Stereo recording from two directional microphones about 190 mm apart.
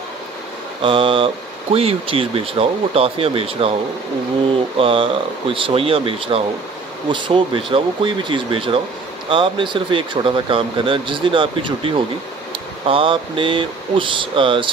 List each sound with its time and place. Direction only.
0.8 s speech: 25° right (ahead or behind)
4.7 s speech: 30° right (ahead or behind)